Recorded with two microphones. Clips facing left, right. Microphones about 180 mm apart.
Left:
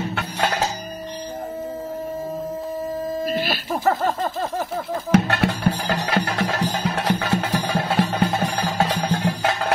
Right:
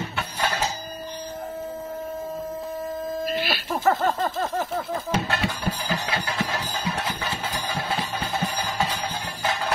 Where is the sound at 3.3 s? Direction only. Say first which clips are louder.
Left 3 dB; 45° left (ahead or behind).